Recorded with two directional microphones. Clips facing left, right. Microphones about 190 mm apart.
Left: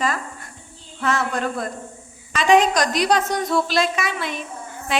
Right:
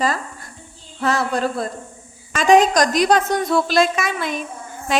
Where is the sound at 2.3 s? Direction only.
45° right (ahead or behind).